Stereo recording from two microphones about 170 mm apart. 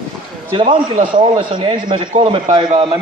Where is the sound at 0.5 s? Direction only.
30° right (ahead or behind).